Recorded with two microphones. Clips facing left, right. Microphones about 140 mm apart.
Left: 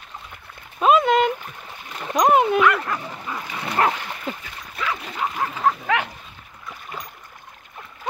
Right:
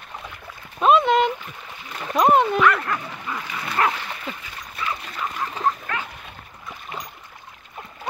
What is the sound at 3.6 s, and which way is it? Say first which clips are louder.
Dog: left 2 dB; 30° left (ahead or behind).